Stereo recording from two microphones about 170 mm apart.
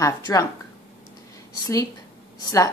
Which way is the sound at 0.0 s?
20° left (ahead or behind).